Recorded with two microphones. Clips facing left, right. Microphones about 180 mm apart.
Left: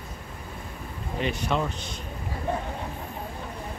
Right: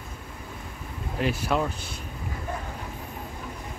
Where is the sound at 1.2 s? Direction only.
5° right (ahead or behind).